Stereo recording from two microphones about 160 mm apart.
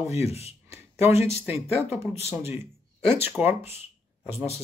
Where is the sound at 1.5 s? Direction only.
40° left (ahead or behind).